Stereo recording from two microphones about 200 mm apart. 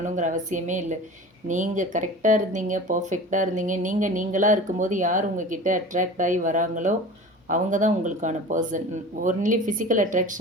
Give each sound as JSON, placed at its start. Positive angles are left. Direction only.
{"t": 0.0, "sound": "speech", "side_deg": -40}